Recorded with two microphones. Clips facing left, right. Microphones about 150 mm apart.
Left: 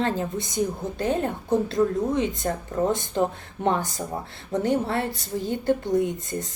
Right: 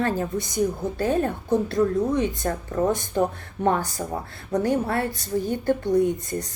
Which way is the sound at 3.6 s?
20° left (ahead or behind).